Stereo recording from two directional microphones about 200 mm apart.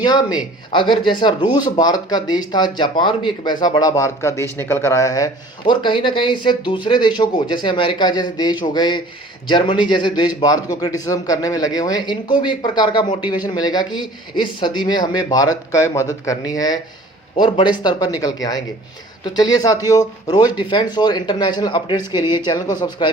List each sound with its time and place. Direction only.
0.0 s speech: 20° left (ahead or behind)